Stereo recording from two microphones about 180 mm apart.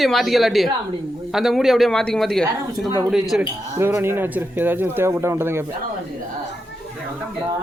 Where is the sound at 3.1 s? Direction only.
Centre (ahead or behind).